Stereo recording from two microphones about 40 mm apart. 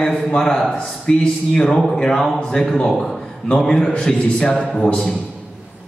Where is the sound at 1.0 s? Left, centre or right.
Left.